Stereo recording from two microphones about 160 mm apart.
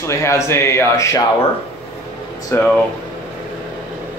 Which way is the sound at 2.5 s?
15° left (ahead or behind).